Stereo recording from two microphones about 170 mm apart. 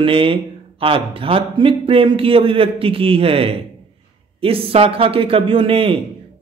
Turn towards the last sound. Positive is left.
turn(degrees=-35)  # may be behind; listen again after turning